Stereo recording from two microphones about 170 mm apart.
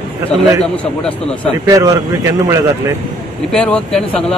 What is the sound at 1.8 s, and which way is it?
Speech, 20° right (ahead or behind).